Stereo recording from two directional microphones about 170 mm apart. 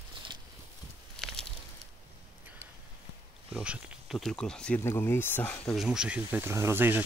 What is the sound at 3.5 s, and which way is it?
Speech, 5° right (ahead or behind).